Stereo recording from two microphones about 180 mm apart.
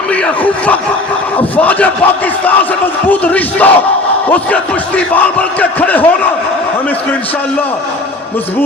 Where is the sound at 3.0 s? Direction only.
10° left (ahead or behind).